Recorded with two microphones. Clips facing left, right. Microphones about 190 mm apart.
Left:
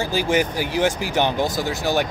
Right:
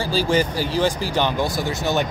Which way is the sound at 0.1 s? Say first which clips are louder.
Right 2 dB; 15° left (ahead or behind).